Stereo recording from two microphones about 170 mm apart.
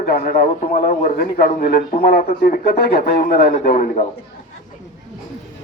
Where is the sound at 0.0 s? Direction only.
60° left (ahead or behind).